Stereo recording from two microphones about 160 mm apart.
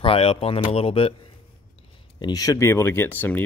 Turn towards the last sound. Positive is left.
turn(degrees=10)  # may be behind; listen again after turning